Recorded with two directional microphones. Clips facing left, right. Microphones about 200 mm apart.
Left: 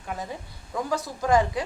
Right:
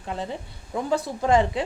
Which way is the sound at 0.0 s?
30° right (ahead or behind).